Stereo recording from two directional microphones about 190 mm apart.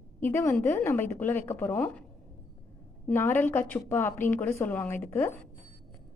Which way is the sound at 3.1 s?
10° left (ahead or behind).